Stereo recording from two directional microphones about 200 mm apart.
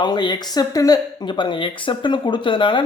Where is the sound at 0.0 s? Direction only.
20° left (ahead or behind).